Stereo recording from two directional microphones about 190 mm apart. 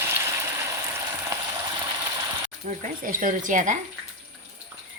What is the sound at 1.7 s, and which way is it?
Ratchet, 25° right (ahead or behind).